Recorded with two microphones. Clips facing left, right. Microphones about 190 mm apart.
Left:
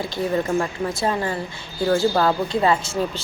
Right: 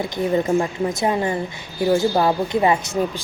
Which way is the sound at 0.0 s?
20° right (ahead or behind).